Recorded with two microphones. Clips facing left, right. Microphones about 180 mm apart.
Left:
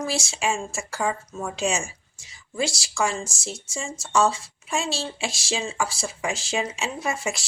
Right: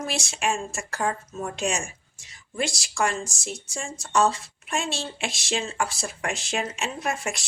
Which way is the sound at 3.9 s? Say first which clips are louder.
Left 1 dB; centre (ahead or behind).